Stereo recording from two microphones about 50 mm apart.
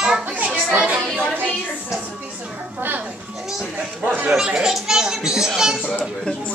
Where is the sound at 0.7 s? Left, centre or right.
Right.